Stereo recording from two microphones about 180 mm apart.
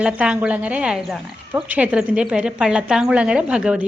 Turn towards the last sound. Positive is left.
turn(degrees=-5)  # may be behind; listen again after turning